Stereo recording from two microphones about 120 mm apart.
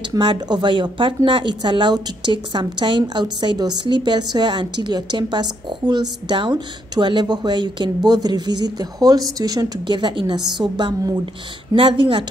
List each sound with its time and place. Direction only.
0.2 s a woman's voice: 40° right (ahead or behind)